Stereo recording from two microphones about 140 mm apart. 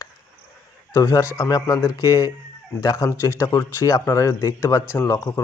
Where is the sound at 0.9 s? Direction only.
25° left (ahead or behind).